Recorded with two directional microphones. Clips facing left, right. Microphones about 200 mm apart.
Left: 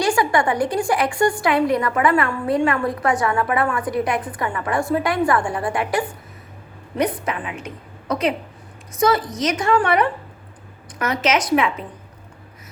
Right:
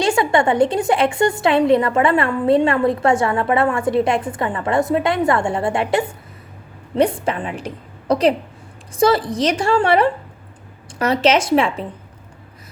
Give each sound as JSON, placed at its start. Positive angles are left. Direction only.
{"t": 0.0, "sound": "a woman's voice", "side_deg": -25}